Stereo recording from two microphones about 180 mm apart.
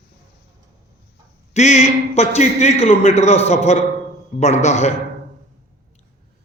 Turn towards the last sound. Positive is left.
turn(degrees=40)  # may be behind; listen again after turning